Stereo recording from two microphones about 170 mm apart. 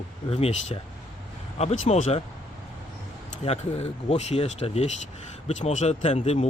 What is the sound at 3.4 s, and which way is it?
A man's voice, 40° left (ahead or behind).